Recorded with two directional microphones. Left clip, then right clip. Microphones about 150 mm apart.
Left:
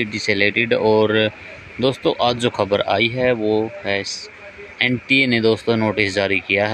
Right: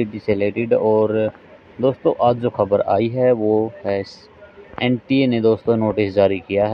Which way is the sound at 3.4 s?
25° left (ahead or behind).